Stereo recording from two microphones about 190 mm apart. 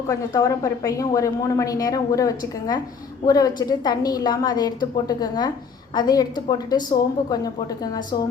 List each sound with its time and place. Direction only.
0.1 s a woman's voice: 20° left (ahead or behind)